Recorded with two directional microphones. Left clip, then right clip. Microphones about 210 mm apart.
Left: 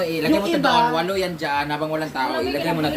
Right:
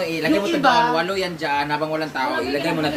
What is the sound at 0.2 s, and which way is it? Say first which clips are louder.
Speech: right 1 dB; centre (ahead or behind).